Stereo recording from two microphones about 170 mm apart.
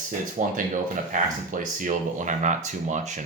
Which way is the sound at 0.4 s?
50° right (ahead or behind).